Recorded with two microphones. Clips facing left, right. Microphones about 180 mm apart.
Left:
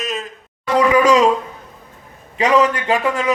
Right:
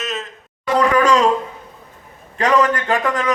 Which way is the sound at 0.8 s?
10° left (ahead or behind).